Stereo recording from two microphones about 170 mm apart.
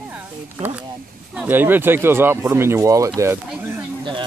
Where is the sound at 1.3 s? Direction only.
10° right (ahead or behind).